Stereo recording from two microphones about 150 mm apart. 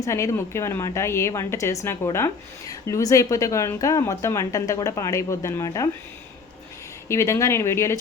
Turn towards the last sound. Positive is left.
turn(degrees=20)  # may be behind; listen again after turning